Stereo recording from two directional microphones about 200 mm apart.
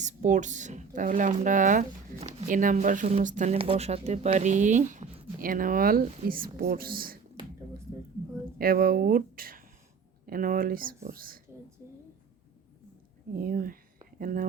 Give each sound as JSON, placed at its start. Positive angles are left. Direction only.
{"t": 0.0, "sound": "speech", "side_deg": -40}
{"t": 8.5, "sound": "speech", "side_deg": -45}
{"t": 13.3, "sound": "speech", "side_deg": -45}